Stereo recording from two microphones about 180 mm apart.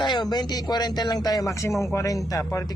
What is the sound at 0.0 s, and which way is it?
Speech, 25° left (ahead or behind).